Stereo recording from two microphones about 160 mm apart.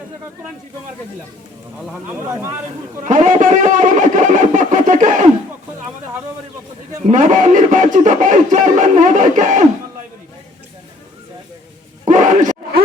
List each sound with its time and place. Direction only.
2.0 s speech: 15° right (ahead or behind)
3.0 s speech: 50° right (ahead or behind)
7.1 s speech: 50° right (ahead or behind)
12.0 s bellow: 50° right (ahead or behind)